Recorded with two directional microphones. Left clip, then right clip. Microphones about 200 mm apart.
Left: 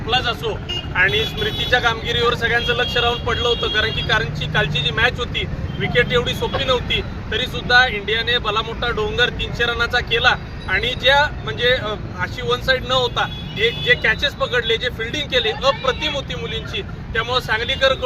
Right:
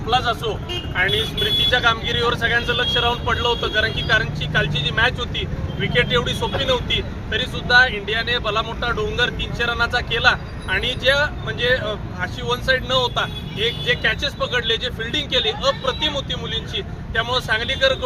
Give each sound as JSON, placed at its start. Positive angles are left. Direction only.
{"t": 0.1, "sound": "speech", "side_deg": 5}
{"t": 1.7, "sound": "speech", "side_deg": 10}